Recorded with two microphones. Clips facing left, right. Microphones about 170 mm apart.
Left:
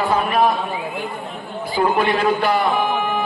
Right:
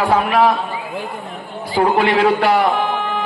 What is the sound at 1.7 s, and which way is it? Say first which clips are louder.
Speech: right 3 dB; 80° right.